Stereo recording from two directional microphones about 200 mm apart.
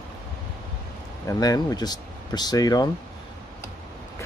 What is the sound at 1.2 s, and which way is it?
Speech, 20° left (ahead or behind).